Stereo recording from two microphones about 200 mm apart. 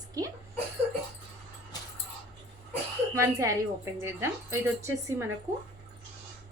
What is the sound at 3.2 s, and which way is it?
A woman's voice, 15° right (ahead or behind).